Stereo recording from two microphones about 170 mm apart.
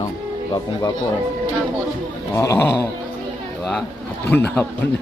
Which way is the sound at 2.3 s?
20° left (ahead or behind).